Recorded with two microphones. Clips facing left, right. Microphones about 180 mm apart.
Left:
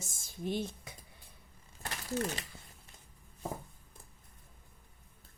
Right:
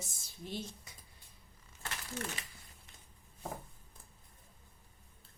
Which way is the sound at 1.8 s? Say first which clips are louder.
Left 7 dB; 35° left (ahead or behind).